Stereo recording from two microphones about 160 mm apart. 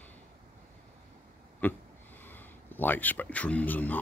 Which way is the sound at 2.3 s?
10° left (ahead or behind).